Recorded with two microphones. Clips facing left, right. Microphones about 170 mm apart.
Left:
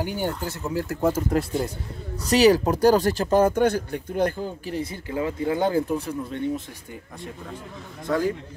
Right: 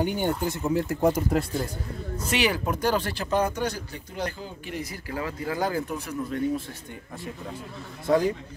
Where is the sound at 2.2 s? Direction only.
40° left (ahead or behind).